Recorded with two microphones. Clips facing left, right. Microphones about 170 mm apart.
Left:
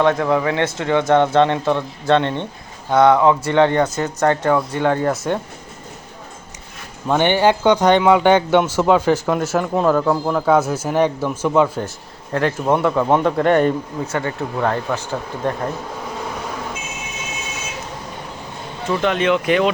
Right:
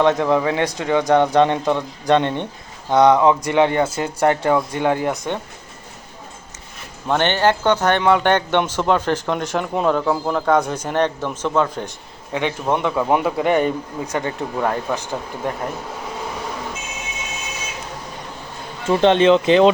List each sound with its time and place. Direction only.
0.0 s speech: 20° right (ahead or behind)
5.0 s a man's voice: 5° left (ahead or behind)
7.1 s a man's voice: 10° left (ahead or behind)
13.1 s a man's voice: 5° right (ahead or behind)
14.0 s speech: 15° right (ahead or behind)
18.9 s speech: 30° right (ahead or behind)